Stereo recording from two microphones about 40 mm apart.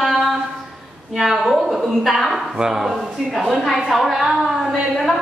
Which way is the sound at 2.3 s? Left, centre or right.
Centre.